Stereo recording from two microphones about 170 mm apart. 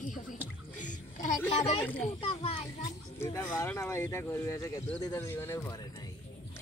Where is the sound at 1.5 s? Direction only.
35° left (ahead or behind).